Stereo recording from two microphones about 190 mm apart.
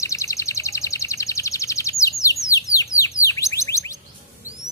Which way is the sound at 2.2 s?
15° left (ahead or behind).